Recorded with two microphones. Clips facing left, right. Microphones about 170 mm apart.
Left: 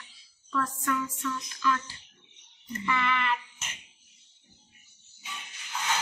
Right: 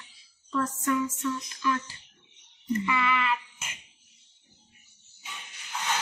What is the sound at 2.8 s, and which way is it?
Child singing, 10° right (ahead or behind).